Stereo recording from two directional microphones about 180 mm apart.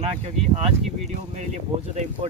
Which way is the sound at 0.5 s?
35° right (ahead or behind).